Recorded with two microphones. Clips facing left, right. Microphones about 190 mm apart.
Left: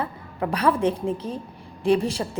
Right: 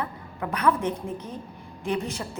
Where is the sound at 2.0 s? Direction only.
30° left (ahead or behind).